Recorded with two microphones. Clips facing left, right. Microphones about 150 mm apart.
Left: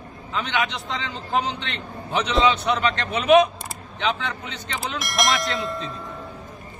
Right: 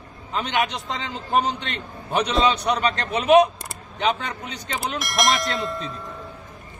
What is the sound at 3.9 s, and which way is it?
Speech, 45° right (ahead or behind).